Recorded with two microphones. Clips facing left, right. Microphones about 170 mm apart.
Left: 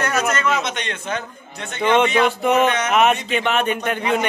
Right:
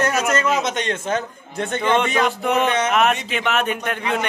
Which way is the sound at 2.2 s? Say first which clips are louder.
Left 2 dB; centre (ahead or behind).